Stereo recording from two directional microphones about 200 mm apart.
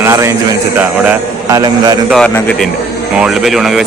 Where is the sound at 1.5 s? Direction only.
20° right (ahead or behind).